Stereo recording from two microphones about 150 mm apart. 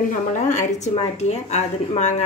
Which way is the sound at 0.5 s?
50° left (ahead or behind).